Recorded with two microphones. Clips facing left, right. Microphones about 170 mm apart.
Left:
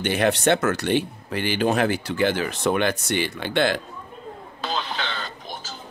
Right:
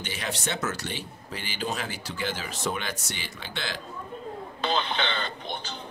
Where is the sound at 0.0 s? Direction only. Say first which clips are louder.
Left 13 dB; 60° left (ahead or behind).